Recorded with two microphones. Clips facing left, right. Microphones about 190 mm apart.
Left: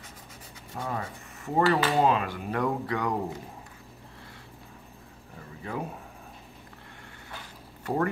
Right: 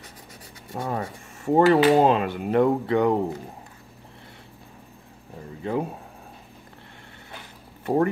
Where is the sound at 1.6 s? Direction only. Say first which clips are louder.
Right 7 dB; 25° right (ahead or behind).